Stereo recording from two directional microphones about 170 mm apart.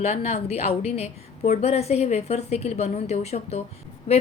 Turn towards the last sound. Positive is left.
turn(degrees=40)  # may be behind; listen again after turning